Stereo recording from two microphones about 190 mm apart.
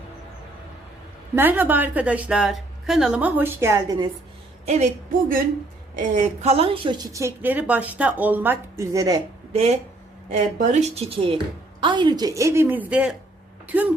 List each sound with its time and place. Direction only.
1.4 s a woman's voice: 10° right (ahead or behind)
4.6 s a sound: 35° right (ahead or behind)
6.0 s a woman's voice: 40° right (ahead or behind); by 9.2 s 20° right (ahead or behind)
9.5 s a woman's voice: 35° right (ahead or behind); by 13.9 s 10° right (ahead or behind)